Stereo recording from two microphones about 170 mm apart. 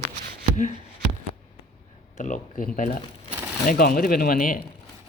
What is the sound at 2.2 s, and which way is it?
Speech, 50° left (ahead or behind).